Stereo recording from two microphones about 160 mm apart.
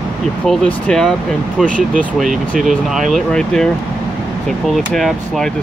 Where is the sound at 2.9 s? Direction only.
Centre (ahead or behind).